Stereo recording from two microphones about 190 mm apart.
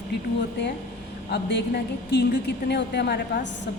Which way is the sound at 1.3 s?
65° left (ahead or behind).